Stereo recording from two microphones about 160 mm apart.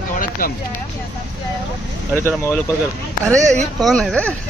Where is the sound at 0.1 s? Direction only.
60° left (ahead or behind).